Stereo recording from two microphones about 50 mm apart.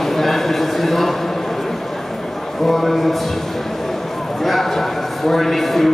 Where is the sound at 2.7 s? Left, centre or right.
Centre.